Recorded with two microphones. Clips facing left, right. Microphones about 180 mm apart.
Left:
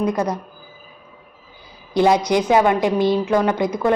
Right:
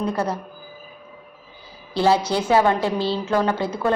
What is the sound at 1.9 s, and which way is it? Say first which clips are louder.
A woman's voice: left 3 dB; 15° left (ahead or behind).